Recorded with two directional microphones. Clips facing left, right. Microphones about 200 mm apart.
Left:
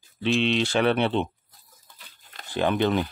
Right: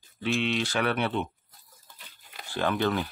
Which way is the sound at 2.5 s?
20° left (ahead or behind).